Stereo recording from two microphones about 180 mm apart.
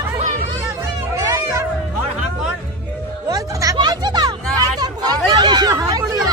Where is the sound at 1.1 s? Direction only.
15° right (ahead or behind).